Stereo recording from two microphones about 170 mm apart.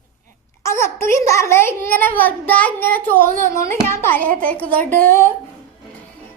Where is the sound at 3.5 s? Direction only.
15° left (ahead or behind).